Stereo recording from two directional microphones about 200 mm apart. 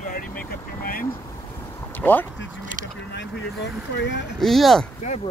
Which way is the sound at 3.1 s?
60° left (ahead or behind).